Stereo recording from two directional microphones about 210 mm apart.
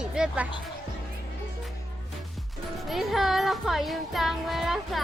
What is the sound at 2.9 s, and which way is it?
Music, centre (ahead or behind).